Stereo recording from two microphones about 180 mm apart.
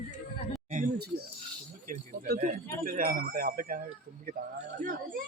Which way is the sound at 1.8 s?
45° right (ahead or behind).